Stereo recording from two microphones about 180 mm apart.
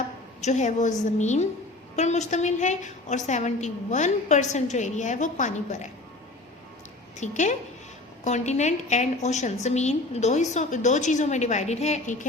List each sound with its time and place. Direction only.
0.4 s a woman's voice: 40° left (ahead or behind)
7.2 s a woman's voice: 40° left (ahead or behind)